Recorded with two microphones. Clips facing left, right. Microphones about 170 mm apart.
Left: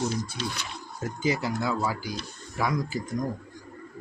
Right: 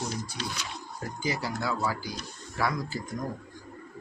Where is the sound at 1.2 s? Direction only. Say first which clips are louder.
Left 4 dB; 20° left (ahead or behind).